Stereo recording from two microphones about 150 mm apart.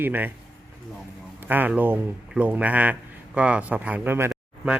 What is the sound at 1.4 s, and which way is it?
Speech, 10° right (ahead or behind).